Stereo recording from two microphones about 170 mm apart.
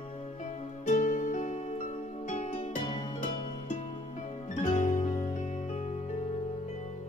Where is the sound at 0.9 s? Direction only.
50° left (ahead or behind); by 3.4 s 30° left (ahead or behind).